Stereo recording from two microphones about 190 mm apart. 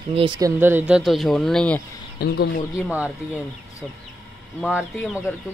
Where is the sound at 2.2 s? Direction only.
55° left (ahead or behind).